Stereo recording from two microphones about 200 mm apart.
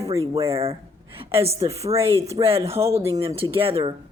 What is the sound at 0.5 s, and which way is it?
A woman's voice, 30° right (ahead or behind).